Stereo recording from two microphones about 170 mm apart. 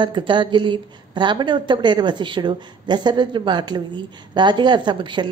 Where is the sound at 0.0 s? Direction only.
30° right (ahead or behind).